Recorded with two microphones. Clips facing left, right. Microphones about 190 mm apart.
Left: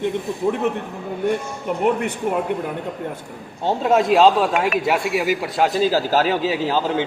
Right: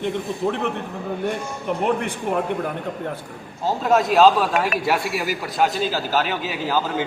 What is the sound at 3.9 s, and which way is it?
A man's voice, 25° left (ahead or behind).